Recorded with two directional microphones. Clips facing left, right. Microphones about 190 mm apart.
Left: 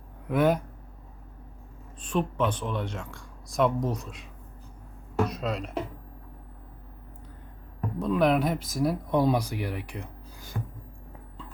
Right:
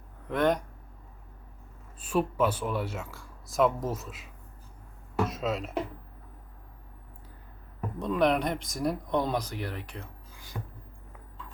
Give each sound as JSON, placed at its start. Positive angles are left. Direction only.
{"t": 0.3, "sound": "speech", "side_deg": 5}
{"t": 2.0, "sound": "speech", "side_deg": -5}
{"t": 7.8, "sound": "speech", "side_deg": 0}
{"t": 10.3, "sound": "a sound", "side_deg": 45}